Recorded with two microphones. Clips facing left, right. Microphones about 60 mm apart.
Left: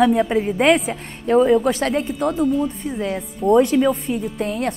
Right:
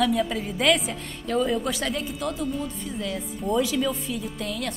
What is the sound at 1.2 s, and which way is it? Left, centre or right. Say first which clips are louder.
Speech: left 10 dB; left.